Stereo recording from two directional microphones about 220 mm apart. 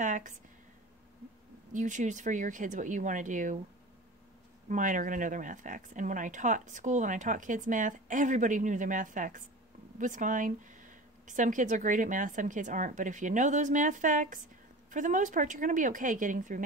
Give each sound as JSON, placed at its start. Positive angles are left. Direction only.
{"t": 0.0, "sound": "speech", "side_deg": -35}
{"t": 1.7, "sound": "speech", "side_deg": -35}
{"t": 4.6, "sound": "speech", "side_deg": -35}